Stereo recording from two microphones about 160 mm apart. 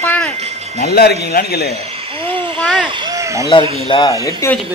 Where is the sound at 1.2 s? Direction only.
80° left.